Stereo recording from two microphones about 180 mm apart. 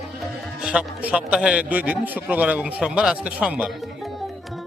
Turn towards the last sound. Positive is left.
turn(degrees=-5)  # may be behind; listen again after turning